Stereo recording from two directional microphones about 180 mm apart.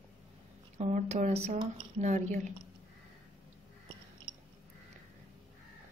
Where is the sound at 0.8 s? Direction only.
40° right (ahead or behind).